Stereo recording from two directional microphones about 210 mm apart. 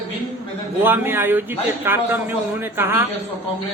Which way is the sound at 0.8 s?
10° right (ahead or behind).